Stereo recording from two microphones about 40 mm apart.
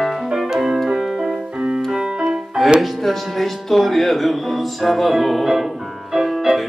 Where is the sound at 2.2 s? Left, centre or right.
Centre.